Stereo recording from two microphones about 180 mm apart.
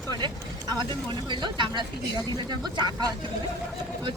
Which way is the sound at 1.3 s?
25° right (ahead or behind).